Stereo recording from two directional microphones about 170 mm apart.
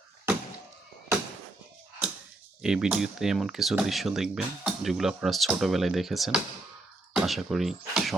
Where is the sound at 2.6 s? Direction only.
5° right (ahead or behind).